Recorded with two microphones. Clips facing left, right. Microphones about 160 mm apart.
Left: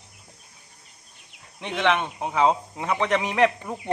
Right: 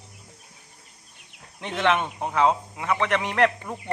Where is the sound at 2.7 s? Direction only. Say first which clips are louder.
Left 1 dB; 20° left (ahead or behind).